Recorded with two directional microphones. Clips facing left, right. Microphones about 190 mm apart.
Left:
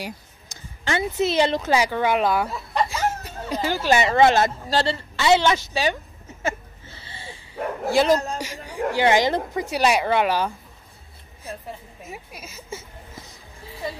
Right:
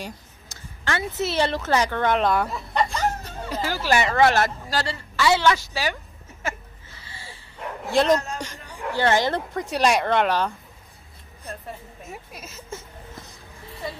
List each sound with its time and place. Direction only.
0.0 s speech: 15° left (ahead or behind)
3.4 s a woman's voice: 20° left (ahead or behind)
6.4 s a sound: 25° left (ahead or behind)
7.9 s a man's voice: 5° left (ahead or behind)
8.4 s a sound: 10° left (ahead or behind)
8.9 s speech: 15° left (ahead or behind)
12.0 s speech: centre (ahead or behind)